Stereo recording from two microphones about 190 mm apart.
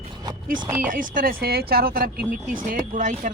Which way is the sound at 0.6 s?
10° right (ahead or behind).